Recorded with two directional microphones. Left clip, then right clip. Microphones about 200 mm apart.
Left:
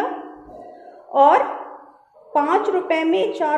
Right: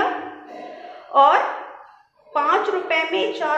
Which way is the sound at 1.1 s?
60° left (ahead or behind).